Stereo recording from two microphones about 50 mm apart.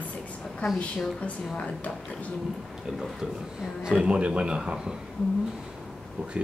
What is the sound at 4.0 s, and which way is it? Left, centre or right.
Speech, centre.